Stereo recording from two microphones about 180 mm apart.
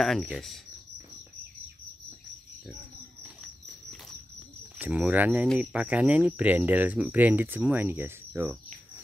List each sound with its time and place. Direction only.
0.0 s speech: centre (ahead or behind)
4.7 s speech: 5° right (ahead or behind)